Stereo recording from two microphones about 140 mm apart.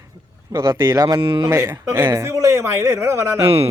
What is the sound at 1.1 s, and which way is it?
Speech, 35° right (ahead or behind).